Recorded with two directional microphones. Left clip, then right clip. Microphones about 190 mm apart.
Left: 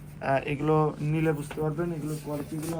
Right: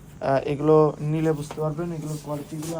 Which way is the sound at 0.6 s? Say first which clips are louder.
Right 7 dB; 45° right (ahead or behind).